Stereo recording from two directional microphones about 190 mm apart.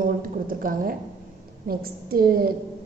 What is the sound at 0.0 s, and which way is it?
A woman's voice, 45° right (ahead or behind).